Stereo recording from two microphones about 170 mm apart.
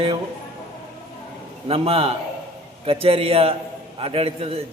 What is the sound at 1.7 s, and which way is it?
A man's voice, 35° right (ahead or behind).